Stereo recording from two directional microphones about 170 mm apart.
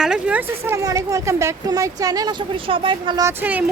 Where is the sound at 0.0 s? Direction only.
5° right (ahead or behind); by 3.3 s 25° right (ahead or behind).